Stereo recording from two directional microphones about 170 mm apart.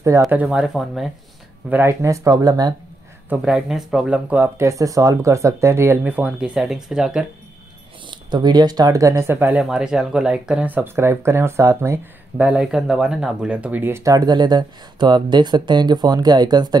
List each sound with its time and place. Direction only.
0.3 s speech: 5° right (ahead or behind)
1.7 s speech: 15° right (ahead or behind)
3.3 s speech: 5° right (ahead or behind)
8.1 s speech: 25° right (ahead or behind)